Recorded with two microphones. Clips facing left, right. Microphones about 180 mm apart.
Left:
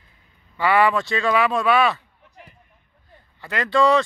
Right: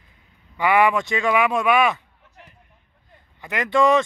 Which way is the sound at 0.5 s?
15° right (ahead or behind).